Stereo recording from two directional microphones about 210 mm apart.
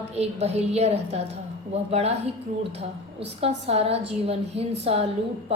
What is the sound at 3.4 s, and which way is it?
A woman's voice, 30° right (ahead or behind).